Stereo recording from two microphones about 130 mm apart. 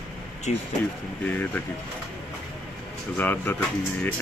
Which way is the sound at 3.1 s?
15° left (ahead or behind).